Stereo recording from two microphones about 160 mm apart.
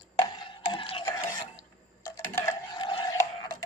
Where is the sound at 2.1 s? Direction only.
20° left (ahead or behind).